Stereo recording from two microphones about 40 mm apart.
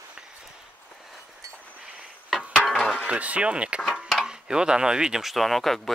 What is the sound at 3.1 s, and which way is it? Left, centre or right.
Speech, right.